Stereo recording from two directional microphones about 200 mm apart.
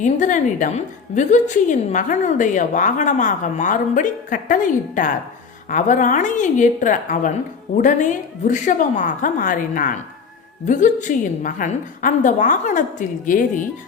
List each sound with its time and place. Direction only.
0.0 s a woman's voice: 40° left (ahead or behind)